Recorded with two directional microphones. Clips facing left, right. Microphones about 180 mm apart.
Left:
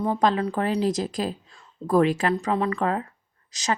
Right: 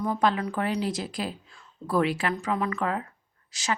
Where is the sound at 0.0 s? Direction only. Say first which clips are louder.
Left 3 dB; 35° left (ahead or behind).